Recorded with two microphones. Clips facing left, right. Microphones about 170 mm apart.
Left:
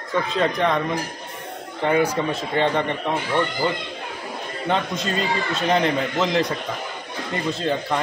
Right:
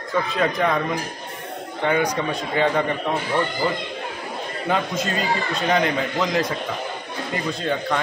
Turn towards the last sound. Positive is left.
turn(degrees=0)  # may be behind; listen again after turning